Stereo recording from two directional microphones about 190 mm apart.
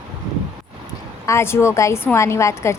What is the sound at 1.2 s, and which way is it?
A woman's voice, 15° left (ahead or behind).